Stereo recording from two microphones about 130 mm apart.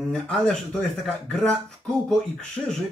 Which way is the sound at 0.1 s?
5° left (ahead or behind).